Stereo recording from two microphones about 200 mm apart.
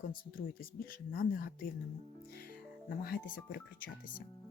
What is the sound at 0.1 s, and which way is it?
Speech, 45° left (ahead or behind).